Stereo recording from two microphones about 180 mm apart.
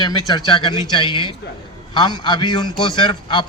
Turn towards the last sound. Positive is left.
turn(degrees=25)  # may be behind; listen again after turning